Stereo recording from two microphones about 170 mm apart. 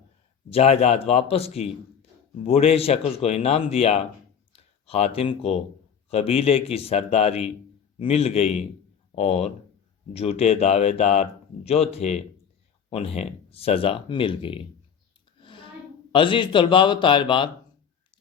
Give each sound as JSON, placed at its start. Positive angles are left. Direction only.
{"t": 0.5, "sound": "speech", "side_deg": 35}
{"t": 15.4, "sound": "a sound", "side_deg": 30}
{"t": 16.1, "sound": "speech", "side_deg": 30}